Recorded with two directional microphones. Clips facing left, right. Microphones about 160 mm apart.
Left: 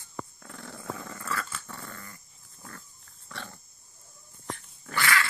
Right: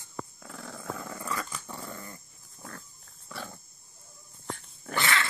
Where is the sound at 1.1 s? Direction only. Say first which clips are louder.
Even; 15° right (ahead or behind).